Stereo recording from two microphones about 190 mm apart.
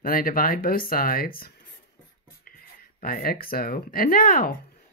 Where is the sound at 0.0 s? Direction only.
50° left (ahead or behind).